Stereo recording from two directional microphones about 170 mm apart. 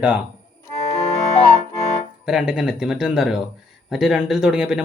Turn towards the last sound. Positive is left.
turn(degrees=-5)  # may be behind; listen again after turning